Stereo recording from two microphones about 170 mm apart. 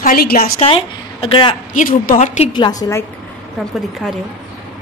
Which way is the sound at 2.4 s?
25° left (ahead or behind).